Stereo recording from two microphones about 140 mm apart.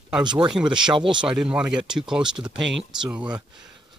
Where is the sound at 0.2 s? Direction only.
35° right (ahead or behind).